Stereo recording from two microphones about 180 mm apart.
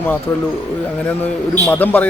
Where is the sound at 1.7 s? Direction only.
10° left (ahead or behind).